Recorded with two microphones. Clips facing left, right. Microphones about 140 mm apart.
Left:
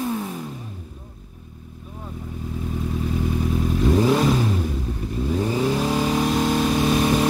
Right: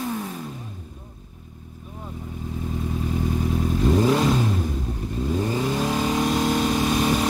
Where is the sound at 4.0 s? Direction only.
10° left (ahead or behind).